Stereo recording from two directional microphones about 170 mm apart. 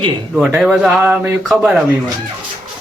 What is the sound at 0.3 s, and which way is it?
Speech, centre (ahead or behind).